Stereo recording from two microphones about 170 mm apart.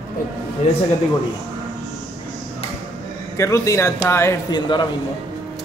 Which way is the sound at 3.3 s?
15° left (ahead or behind).